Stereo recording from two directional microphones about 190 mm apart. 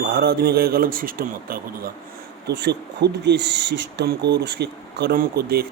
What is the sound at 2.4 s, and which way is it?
Speech, 60° right (ahead or behind).